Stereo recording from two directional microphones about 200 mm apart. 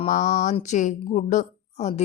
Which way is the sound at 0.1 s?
40° left (ahead or behind).